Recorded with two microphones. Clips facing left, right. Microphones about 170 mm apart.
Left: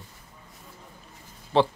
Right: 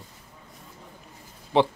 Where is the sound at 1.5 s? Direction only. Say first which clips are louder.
Even; 15° right (ahead or behind).